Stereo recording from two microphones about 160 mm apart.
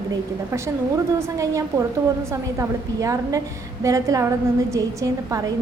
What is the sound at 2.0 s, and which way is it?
A woman's voice, 20° right (ahead or behind).